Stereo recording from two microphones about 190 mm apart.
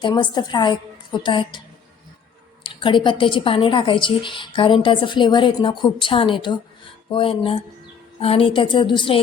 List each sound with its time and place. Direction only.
0.0 s a woman's voice: 20° left (ahead or behind)
2.8 s a woman's voice: 25° left (ahead or behind)